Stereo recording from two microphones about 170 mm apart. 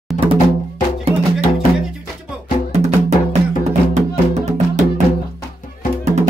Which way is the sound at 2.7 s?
40° right (ahead or behind).